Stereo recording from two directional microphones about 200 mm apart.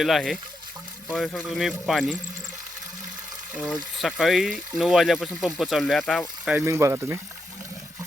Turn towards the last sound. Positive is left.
turn(degrees=-10)  # may be behind; listen again after turning